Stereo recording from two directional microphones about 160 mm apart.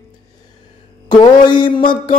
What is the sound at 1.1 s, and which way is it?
Mantra, 30° left (ahead or behind).